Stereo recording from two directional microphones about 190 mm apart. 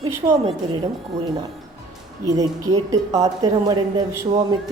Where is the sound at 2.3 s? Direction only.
20° right (ahead or behind).